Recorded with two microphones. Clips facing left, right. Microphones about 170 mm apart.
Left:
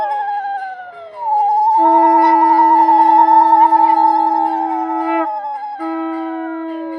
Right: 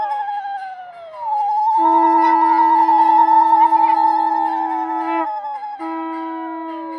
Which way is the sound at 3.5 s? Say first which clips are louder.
Left 3 dB; 40° left (ahead or behind).